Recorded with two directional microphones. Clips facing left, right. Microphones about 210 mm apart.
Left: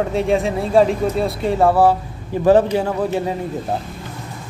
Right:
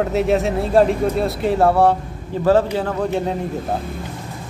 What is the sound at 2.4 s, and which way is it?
Speech, 15° left (ahead or behind).